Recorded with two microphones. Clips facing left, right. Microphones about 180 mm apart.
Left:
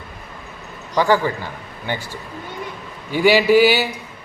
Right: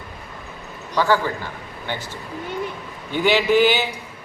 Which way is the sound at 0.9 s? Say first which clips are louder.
Left 2 dB; 15° left (ahead or behind).